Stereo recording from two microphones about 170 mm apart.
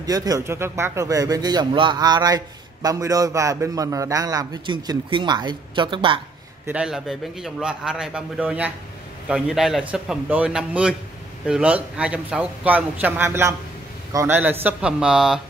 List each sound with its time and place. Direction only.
0.0 s speech: 20° right (ahead or behind)
6.7 s a man's voice: 5° right (ahead or behind)